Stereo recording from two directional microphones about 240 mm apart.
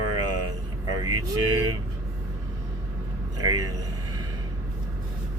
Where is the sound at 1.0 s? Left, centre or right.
Centre.